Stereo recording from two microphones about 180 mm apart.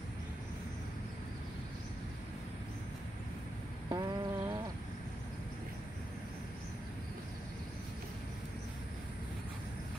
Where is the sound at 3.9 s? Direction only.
20° right (ahead or behind).